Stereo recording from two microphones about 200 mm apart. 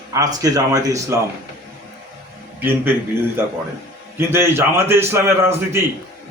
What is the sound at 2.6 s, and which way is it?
Speech, 10° right (ahead or behind).